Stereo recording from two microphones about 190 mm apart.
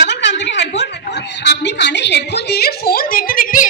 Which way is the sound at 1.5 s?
65° left (ahead or behind).